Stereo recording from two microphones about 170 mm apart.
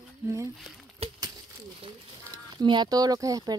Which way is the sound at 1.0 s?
35° right (ahead or behind).